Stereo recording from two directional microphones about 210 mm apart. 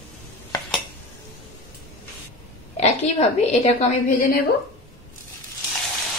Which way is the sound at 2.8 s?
30° left (ahead or behind).